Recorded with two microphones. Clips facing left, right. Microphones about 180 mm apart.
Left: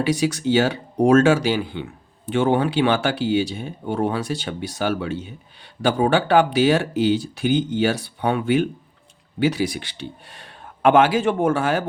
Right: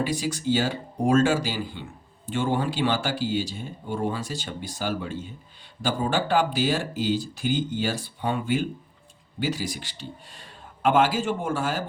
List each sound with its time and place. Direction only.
0.0 s speech: 75° left (ahead or behind)